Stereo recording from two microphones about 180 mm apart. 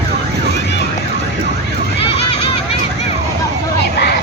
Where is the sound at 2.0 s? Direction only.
30° left (ahead or behind).